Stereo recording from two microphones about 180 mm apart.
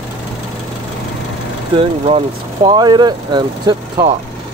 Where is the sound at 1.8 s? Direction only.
30° right (ahead or behind).